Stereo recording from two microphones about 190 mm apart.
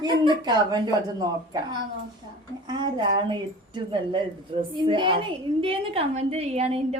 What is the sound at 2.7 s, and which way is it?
A woman's voice, 20° right (ahead or behind).